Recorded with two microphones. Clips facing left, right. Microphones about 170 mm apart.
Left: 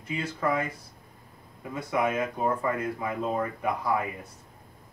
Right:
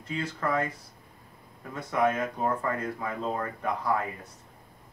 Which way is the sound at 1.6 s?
10° left (ahead or behind).